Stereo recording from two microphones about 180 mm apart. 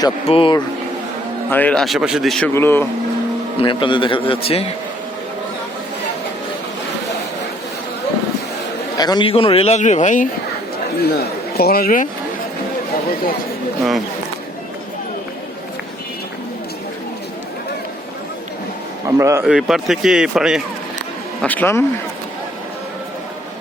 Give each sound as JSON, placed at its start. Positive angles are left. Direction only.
{"t": 0.3, "sound": "a man's voice", "side_deg": 30}
{"t": 1.5, "sound": "speech", "side_deg": 10}
{"t": 2.5, "sound": "a man's voice", "side_deg": 15}
{"t": 3.6, "sound": "a man's voice", "side_deg": 25}
{"t": 9.0, "sound": "a man's voice", "side_deg": 25}
{"t": 11.0, "sound": "speech", "side_deg": 60}
{"t": 19.0, "sound": "a sound", "side_deg": -15}
{"t": 19.5, "sound": "speech", "side_deg": 0}
{"t": 21.4, "sound": "a man's voice", "side_deg": 10}